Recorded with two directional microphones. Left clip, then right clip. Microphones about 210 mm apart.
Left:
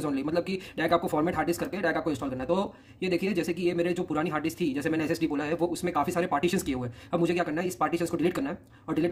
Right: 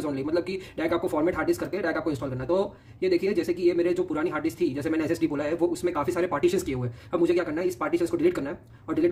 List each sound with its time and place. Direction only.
0.0 s speech: 30° left (ahead or behind)